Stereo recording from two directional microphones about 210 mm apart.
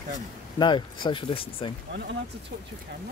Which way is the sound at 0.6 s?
20° left (ahead or behind).